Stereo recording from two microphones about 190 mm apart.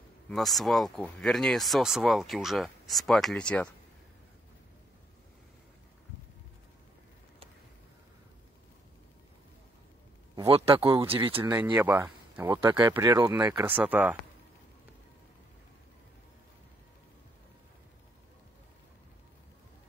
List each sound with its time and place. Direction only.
0.3 s speech: centre (ahead or behind)
10.5 s speech: 30° right (ahead or behind)
11.7 s speech: 10° right (ahead or behind)